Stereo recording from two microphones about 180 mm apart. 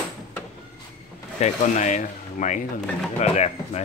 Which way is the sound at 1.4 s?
40° left (ahead or behind).